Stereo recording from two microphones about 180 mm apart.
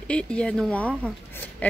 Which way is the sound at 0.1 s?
5° left (ahead or behind).